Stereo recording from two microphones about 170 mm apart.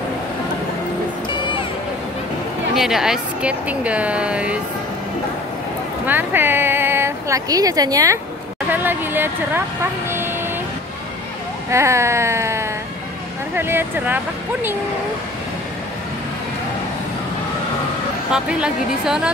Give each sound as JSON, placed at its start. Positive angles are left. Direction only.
{"t": 2.7, "sound": "speech", "side_deg": 0}
{"t": 6.0, "sound": "speech", "side_deg": -10}
{"t": 11.7, "sound": "speech", "side_deg": -15}
{"t": 18.3, "sound": "speech", "side_deg": -5}